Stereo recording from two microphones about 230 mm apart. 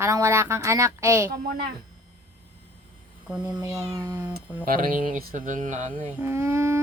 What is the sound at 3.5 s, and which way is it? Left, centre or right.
Speech, centre.